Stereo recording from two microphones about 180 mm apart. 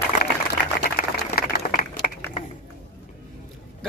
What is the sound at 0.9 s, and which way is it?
Applause, 55° left (ahead or behind).